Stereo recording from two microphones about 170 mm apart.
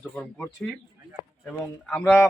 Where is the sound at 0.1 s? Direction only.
10° left (ahead or behind).